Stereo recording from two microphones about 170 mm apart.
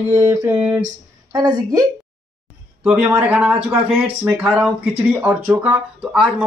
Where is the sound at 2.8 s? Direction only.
5° right (ahead or behind).